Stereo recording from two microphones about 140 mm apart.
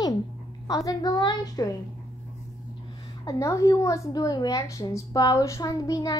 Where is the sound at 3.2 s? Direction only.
20° left (ahead or behind).